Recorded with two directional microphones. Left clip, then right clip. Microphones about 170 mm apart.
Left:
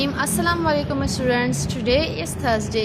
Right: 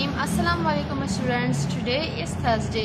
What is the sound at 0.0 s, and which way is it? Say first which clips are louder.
A woman's voice: left 3 dB; 45° left (ahead or behind).